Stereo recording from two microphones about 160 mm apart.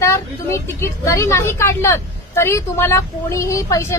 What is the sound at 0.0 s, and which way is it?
A woman's voice, 15° left (ahead or behind).